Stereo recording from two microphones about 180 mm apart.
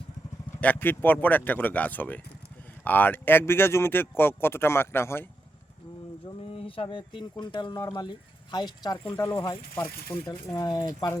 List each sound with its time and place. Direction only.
0.6 s speech: 10° left (ahead or behind)
6.5 s speech: 30° left (ahead or behind)